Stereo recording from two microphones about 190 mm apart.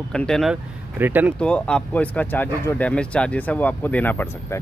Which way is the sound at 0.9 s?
10° right (ahead or behind).